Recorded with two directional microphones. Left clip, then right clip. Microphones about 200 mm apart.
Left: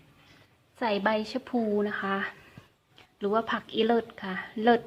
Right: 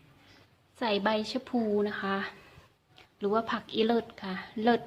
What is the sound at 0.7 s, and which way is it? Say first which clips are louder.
A woman's voice: left 2 dB; centre (ahead or behind).